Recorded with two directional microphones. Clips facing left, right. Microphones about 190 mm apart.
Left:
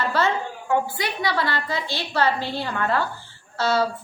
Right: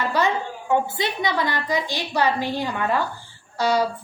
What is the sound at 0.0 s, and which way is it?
A woman's voice, 15° right (ahead or behind).